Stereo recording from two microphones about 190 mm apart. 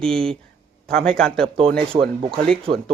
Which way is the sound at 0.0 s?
5° left (ahead or behind).